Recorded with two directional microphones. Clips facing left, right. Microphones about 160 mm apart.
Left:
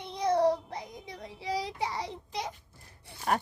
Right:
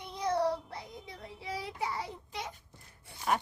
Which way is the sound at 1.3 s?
90° left.